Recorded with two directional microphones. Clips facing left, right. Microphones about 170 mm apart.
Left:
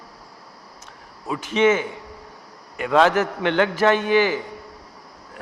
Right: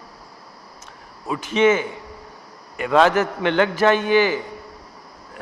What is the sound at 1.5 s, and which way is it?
A man's voice, 10° right (ahead or behind).